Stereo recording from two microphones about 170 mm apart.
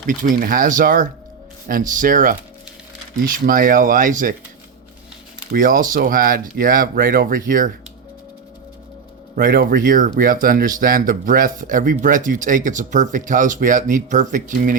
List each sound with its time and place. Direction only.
0.1 s speech: 50° right (ahead or behind)
5.5 s speech: 55° right (ahead or behind)
9.3 s speech: 55° right (ahead or behind)